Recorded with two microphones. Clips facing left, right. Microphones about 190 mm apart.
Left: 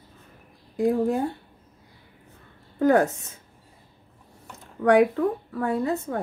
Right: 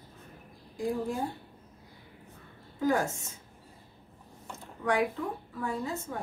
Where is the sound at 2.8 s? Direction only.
60° left (ahead or behind).